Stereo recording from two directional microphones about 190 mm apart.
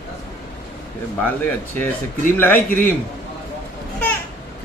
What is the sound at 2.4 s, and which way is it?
Mantra, 10° left (ahead or behind).